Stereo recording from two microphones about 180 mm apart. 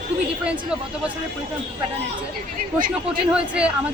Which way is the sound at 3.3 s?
5° right (ahead or behind).